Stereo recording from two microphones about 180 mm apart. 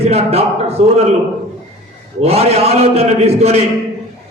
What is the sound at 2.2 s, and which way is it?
A man's voice, 35° right (ahead or behind).